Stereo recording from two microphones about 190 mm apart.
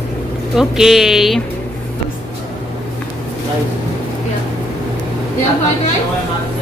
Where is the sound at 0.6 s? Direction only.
Centre (ahead or behind).